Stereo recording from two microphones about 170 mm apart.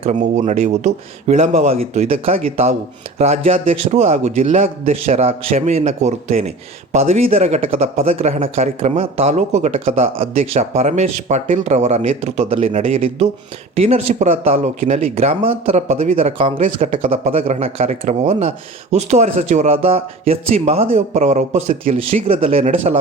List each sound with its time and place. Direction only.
0.0 s speech: 40° right (ahead or behind)